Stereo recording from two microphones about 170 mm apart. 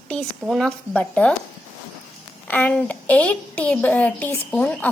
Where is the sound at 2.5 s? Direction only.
10° left (ahead or behind).